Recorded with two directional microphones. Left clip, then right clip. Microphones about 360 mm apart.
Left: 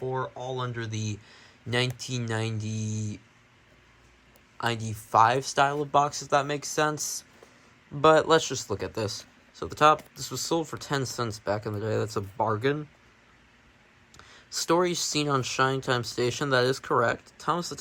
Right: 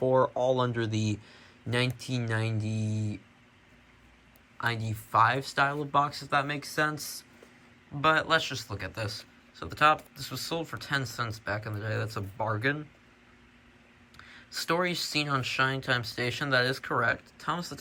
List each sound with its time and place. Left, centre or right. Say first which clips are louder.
0.1 s speech: right 8 dB; centre
4.5 s speech: left 2 dB; centre
14.2 s speech: left 3 dB; centre